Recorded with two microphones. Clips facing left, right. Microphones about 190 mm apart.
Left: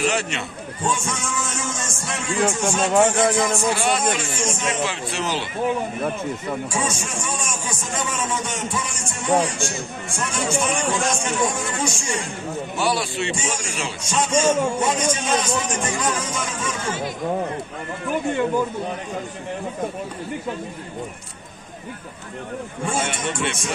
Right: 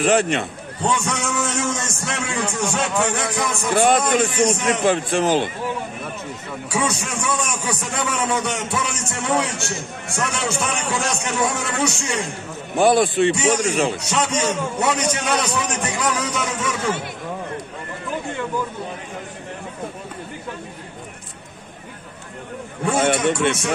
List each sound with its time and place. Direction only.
0.0 s a man's voice: 55° right (ahead or behind)
3.3 s a man's voice: 55° right (ahead or behind)
6.7 s a man's voice: 65° right (ahead or behind)
12.7 s a man's voice: 55° right (ahead or behind)
22.8 s a man's voice: 65° right (ahead or behind)